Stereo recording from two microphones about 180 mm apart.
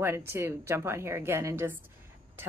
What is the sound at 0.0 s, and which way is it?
A woman's voice, 15° right (ahead or behind).